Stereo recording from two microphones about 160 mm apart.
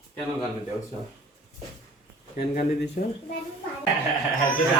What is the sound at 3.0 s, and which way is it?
Speech, 55° left (ahead or behind).